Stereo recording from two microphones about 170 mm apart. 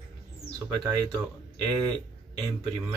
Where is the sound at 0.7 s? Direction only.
20° right (ahead or behind).